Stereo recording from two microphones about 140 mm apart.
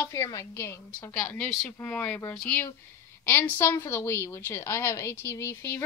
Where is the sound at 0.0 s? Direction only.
20° left (ahead or behind).